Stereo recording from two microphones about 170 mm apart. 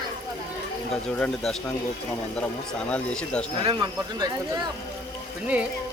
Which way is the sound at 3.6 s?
30° right (ahead or behind).